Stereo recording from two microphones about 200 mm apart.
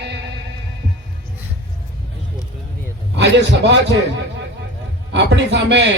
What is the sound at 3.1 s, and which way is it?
Speech, 60° right (ahead or behind).